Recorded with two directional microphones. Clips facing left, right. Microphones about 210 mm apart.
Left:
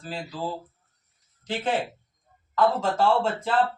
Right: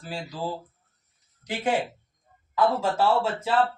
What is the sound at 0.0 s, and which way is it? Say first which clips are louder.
Speech: even; 15° right (ahead or behind).